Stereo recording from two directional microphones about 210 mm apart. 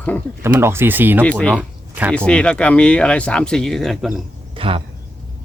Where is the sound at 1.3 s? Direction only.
5° left (ahead or behind).